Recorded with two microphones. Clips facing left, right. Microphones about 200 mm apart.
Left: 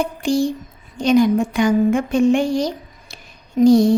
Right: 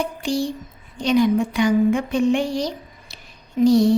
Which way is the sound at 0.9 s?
45° left (ahead or behind).